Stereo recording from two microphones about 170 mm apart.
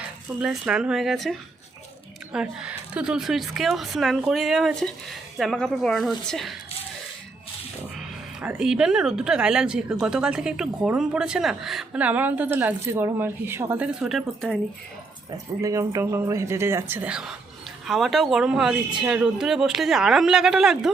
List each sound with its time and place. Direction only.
0.3 s speech: 5° right (ahead or behind)
7.9 s speech: 5° right (ahead or behind)
15.6 s speech: 20° right (ahead or behind); by 20.9 s centre (ahead or behind)